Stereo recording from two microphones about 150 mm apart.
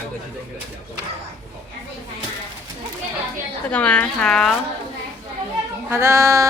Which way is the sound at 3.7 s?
10° left (ahead or behind).